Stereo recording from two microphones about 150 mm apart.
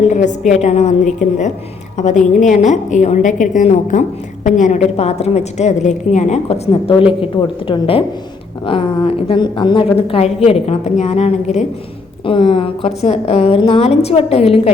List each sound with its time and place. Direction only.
0.1 s a woman's voice: 50° left (ahead or behind); by 9.9 s 35° left (ahead or behind)
10.1 s a woman's voice: 45° left (ahead or behind)
12.2 s a woman's voice: 35° left (ahead or behind)